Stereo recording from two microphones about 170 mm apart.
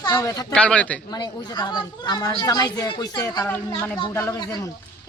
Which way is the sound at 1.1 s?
25° left (ahead or behind).